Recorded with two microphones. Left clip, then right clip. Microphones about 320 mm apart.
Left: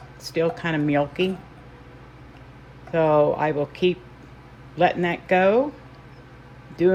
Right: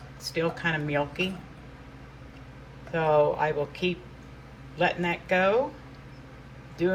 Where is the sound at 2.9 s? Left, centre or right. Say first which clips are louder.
Left 4 dB; left.